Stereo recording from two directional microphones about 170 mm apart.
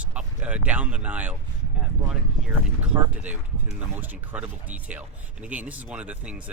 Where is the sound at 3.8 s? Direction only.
10° right (ahead or behind).